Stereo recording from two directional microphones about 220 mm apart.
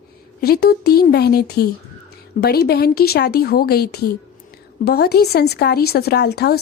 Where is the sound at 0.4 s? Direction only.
45° left (ahead or behind).